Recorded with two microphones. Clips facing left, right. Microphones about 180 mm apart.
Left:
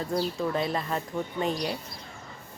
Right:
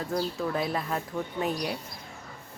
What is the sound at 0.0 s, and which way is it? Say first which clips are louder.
Speech: left 1 dB; centre (ahead or behind).